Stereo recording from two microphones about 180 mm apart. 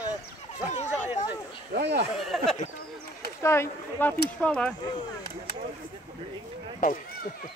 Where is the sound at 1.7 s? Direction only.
70° right (ahead or behind).